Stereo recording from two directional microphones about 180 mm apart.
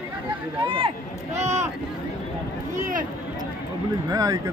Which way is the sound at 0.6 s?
30° right (ahead or behind).